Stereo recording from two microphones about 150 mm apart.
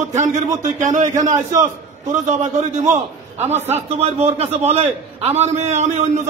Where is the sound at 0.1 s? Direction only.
50° right (ahead or behind).